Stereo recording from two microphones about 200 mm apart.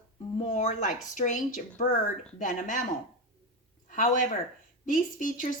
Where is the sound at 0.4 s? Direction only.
35° left (ahead or behind).